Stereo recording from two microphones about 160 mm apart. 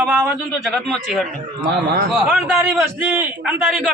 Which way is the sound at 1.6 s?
90° right.